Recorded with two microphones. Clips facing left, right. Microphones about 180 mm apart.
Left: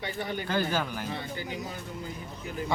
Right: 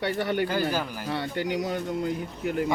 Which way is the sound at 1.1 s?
75° right (ahead or behind).